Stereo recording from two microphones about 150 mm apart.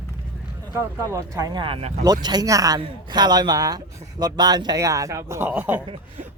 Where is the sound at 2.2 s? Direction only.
25° right (ahead or behind).